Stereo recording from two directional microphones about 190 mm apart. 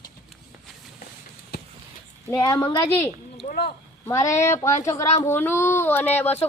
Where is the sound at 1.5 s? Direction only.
55° left (ahead or behind).